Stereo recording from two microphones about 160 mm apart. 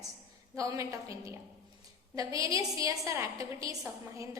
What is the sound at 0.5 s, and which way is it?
Speech, 20° right (ahead or behind).